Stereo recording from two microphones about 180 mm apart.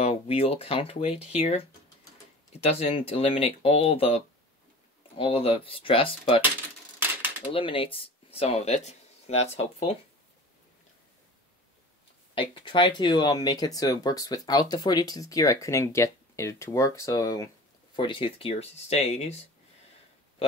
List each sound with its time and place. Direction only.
0.0 s speech: 35° left (ahead or behind)
7.0 s a sound: 10° right (ahead or behind)
7.5 s speech: 30° left (ahead or behind)
12.4 s speech: 25° left (ahead or behind)